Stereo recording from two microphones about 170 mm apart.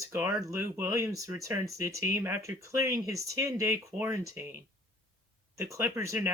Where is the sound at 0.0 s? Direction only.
15° right (ahead or behind).